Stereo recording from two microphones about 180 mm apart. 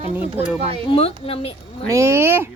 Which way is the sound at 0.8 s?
30° left (ahead or behind).